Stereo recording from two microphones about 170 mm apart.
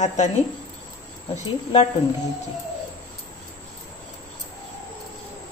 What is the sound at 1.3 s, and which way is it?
Speech, 40° left (ahead or behind).